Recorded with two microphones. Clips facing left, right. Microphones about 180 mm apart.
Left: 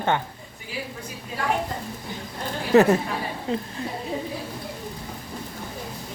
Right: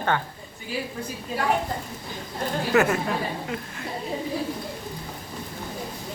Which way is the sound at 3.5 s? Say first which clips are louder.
Left 5 dB; 30° left (ahead or behind).